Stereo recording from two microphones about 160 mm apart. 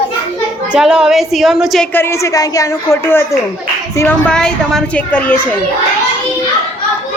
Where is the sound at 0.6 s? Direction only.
5° right (ahead or behind).